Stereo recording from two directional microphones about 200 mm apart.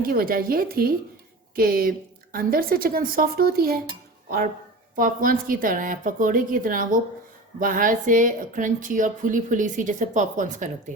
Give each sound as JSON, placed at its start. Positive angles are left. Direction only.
{"t": 0.0, "sound": "a woman's voice", "side_deg": -45}
{"t": 4.9, "sound": "a woman's voice", "side_deg": -45}